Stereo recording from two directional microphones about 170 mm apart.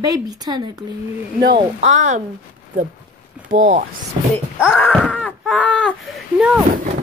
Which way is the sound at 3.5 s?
50° right (ahead or behind).